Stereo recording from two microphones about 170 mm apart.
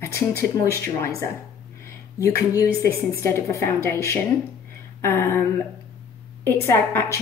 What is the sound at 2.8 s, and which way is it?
Speech, 15° left (ahead or behind).